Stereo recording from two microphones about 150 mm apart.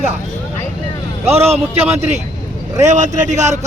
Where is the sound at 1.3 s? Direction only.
45° right (ahead or behind).